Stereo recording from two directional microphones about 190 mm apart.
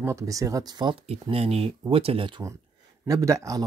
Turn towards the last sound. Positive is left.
turn(degrees=-15)  # may be behind; listen again after turning